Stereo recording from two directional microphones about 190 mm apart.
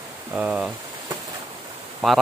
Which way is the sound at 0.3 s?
5° right (ahead or behind).